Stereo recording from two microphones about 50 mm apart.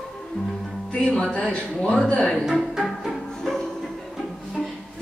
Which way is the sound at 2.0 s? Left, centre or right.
Centre.